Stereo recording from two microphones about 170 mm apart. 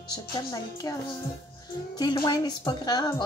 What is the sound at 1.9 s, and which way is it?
Speech, 25° left (ahead or behind).